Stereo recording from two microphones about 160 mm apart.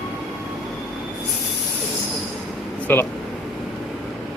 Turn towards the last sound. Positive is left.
turn(degrees=10)  # may be behind; listen again after turning